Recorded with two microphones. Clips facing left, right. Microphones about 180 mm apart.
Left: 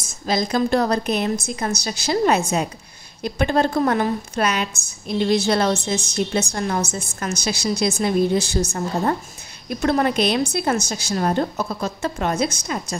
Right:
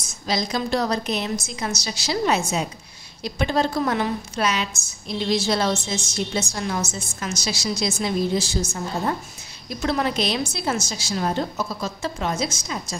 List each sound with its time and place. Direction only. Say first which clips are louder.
0.0 s a woman's voice: left 3 dB; 50° left (ahead or behind)